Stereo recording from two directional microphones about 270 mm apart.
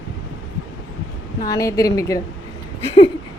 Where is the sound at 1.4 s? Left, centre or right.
Centre.